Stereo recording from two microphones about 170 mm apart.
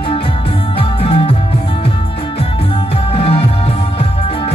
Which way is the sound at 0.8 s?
30° left (ahead or behind).